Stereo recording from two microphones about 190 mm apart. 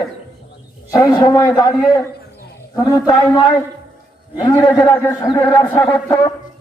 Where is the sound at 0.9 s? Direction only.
20° left (ahead or behind).